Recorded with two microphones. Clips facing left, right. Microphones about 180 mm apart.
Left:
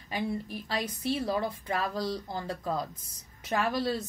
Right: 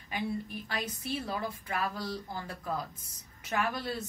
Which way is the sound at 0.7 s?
30° left (ahead or behind).